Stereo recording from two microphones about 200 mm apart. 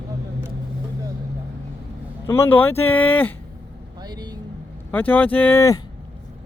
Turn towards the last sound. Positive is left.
turn(degrees=15)  # may be behind; listen again after turning